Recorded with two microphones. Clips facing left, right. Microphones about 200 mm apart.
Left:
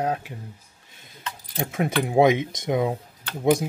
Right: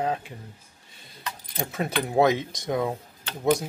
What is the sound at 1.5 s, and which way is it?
Speech, 10° left (ahead or behind).